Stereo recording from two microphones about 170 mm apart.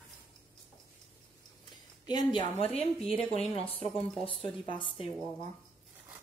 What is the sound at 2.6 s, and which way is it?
Speech, 35° left (ahead or behind).